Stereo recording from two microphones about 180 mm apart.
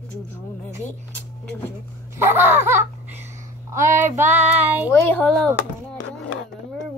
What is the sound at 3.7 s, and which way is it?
Child singing, 15° right (ahead or behind).